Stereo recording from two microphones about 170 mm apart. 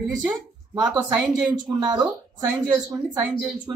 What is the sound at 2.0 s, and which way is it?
Speech, 15° right (ahead or behind).